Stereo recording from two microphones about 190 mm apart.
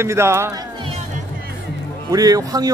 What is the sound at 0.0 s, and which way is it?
Speech, 15° right (ahead or behind).